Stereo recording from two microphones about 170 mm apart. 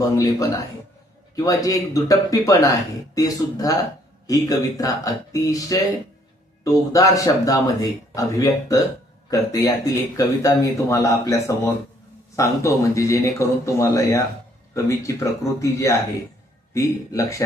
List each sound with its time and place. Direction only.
1.5 s speech: 20° left (ahead or behind)